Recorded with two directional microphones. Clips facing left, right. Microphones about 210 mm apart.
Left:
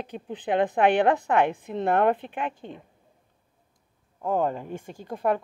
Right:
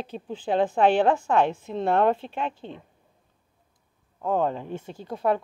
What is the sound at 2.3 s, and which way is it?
Speech, 50° left (ahead or behind).